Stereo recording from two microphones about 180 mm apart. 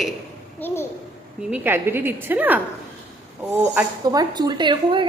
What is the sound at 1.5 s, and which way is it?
A woman's voice, 10° right (ahead or behind).